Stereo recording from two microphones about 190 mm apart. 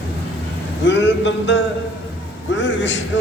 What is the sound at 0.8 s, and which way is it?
A man's voice, 70° left (ahead or behind).